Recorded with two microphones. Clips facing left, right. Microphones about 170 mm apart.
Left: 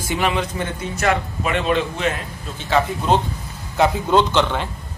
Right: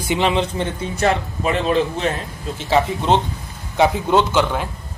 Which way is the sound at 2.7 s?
20° right (ahead or behind).